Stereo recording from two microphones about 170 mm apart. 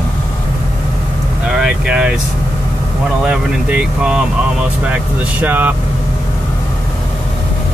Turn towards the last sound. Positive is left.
turn(degrees=-10)  # may be behind; listen again after turning